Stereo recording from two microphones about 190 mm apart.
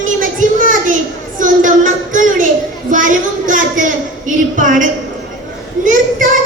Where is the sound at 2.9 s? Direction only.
45° right (ahead or behind).